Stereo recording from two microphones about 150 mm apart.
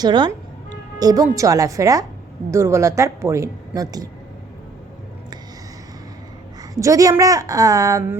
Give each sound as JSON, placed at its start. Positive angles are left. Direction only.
{"t": 0.0, "sound": "a woman's voice", "side_deg": -30}
{"t": 6.7, "sound": "a woman's voice", "side_deg": -20}